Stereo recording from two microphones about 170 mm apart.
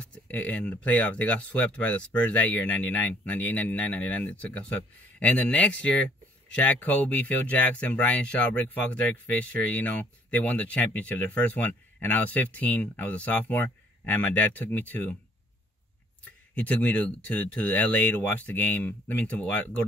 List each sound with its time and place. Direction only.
0.0 s speech: 10° left (ahead or behind)
16.5 s speech: 10° left (ahead or behind)